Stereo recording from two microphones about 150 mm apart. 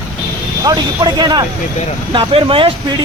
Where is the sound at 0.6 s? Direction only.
30° right (ahead or behind).